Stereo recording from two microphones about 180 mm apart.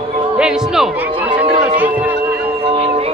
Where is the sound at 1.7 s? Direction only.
10° right (ahead or behind).